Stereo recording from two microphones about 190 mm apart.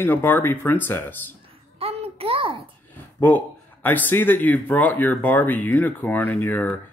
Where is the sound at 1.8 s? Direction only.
30° right (ahead or behind).